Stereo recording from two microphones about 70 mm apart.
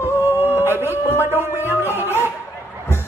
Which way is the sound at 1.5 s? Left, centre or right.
Left.